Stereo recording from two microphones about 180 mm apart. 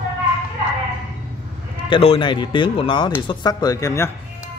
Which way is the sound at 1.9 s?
30° left (ahead or behind).